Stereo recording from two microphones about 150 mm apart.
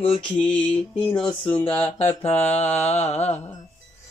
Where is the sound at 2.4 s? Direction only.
45° left (ahead or behind).